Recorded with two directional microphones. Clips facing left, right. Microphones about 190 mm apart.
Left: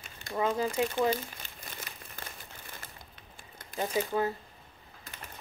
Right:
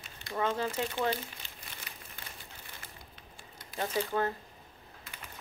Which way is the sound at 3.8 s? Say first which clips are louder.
Left 2 dB; 10° left (ahead or behind).